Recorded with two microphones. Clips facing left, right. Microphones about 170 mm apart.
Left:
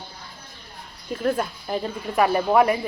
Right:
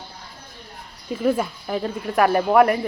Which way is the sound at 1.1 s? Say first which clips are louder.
Right 3 dB; 5° right (ahead or behind).